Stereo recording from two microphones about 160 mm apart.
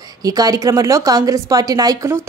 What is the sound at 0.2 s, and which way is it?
A woman's voice, 25° right (ahead or behind).